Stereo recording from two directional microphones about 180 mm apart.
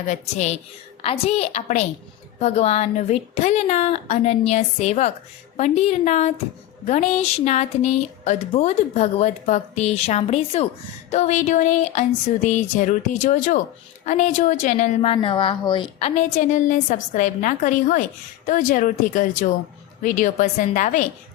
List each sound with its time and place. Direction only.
0.1 s a woman's voice: 40° left (ahead or behind)